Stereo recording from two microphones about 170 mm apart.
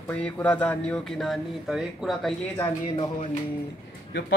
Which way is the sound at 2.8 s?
35° left (ahead or behind).